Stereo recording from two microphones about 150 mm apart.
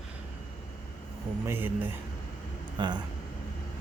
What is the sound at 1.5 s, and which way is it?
Speech, 15° right (ahead or behind).